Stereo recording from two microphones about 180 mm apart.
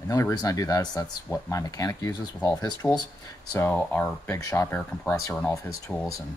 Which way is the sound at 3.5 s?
10° left (ahead or behind).